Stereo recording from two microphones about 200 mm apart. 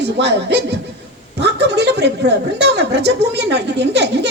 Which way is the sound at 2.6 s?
55° right (ahead or behind).